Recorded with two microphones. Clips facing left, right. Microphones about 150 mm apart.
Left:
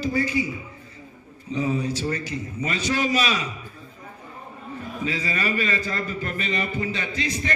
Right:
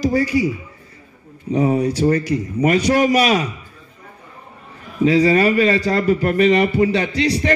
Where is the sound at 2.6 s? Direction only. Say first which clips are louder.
Right 13 dB; 65° right (ahead or behind).